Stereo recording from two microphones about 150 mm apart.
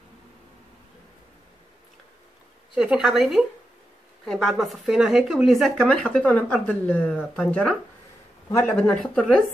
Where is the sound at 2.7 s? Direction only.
5° right (ahead or behind).